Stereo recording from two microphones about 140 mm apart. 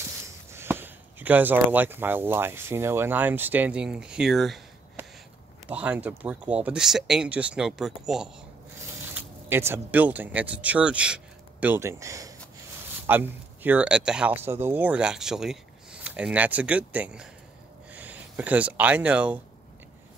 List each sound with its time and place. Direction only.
0.5 s speech: 15° right (ahead or behind); by 4.6 s centre (ahead or behind)
5.0 s a sound: 15° right (ahead or behind)
5.7 s speech: 10° right (ahead or behind)
9.0 s speech: 15° right (ahead or behind)